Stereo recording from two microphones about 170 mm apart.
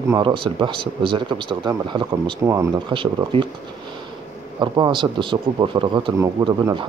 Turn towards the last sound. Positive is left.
turn(degrees=-30)  # may be behind; listen again after turning